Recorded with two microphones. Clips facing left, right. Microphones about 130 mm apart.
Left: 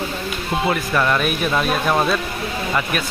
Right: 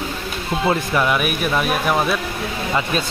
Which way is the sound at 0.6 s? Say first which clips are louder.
Right 2 dB; 25° right (ahead or behind).